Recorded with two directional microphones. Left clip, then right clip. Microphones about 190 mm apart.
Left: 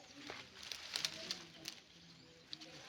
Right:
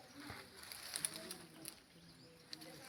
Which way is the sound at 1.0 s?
60° left (ahead or behind).